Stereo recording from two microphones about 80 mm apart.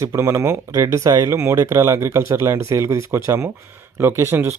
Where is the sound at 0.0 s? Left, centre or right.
Right.